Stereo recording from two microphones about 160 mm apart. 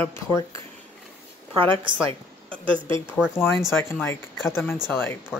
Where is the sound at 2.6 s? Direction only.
30° right (ahead or behind).